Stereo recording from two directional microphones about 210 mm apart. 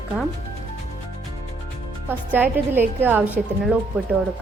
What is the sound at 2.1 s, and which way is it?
A woman's voice, 10° right (ahead or behind).